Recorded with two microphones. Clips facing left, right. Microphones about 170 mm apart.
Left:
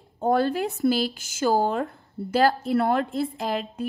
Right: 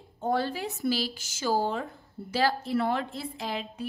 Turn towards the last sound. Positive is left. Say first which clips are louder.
# left 6 dB
turn(degrees=50)  # may be behind; listen again after turning